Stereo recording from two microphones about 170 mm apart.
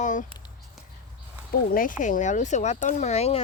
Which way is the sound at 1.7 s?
50° left (ahead or behind).